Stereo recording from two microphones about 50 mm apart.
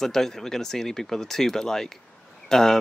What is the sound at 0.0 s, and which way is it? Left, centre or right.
Speech, centre.